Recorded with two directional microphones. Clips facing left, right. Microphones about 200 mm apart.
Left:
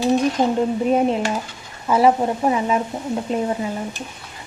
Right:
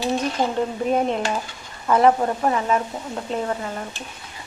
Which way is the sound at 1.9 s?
10° left (ahead or behind).